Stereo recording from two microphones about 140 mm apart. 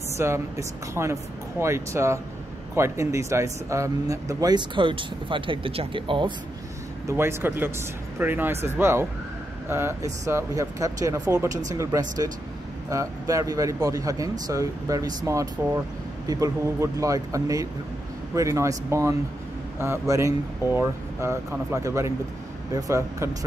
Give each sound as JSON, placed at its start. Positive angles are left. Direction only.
{"t": 0.2, "sound": "speech", "side_deg": -20}
{"t": 7.1, "sound": "speech", "side_deg": -20}